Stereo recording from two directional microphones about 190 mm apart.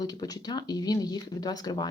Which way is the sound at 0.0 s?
20° left (ahead or behind).